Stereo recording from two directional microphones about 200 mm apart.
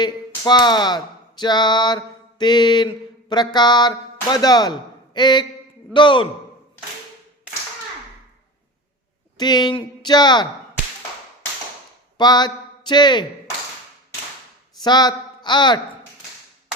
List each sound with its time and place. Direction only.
0.4 s speech: 20° left (ahead or behind)
9.4 s speech: 20° left (ahead or behind)
12.1 s speech: 20° left (ahead or behind)
14.8 s speech: 20° left (ahead or behind)